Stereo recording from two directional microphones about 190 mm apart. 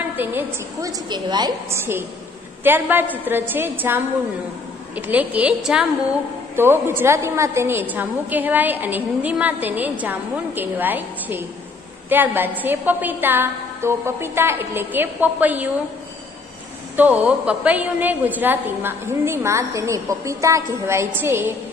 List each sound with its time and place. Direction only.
0.1 s a woman's voice: 10° right (ahead or behind)
1.0 s a woman's voice: 20° right (ahead or behind)
16.9 s a woman's voice: 10° right (ahead or behind)